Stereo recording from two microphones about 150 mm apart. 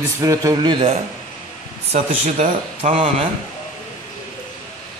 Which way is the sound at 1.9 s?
50° right (ahead or behind).